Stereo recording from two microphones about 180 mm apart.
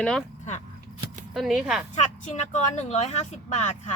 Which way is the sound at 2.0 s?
40° left (ahead or behind).